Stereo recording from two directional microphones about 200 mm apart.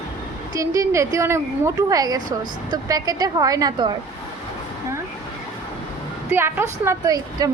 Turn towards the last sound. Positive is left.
turn(degrees=-15)  # may be behind; listen again after turning